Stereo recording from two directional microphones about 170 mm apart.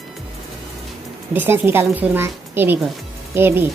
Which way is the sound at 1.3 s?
15° right (ahead or behind).